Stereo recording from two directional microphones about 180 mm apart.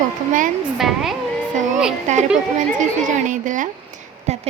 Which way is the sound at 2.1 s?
40° right (ahead or behind).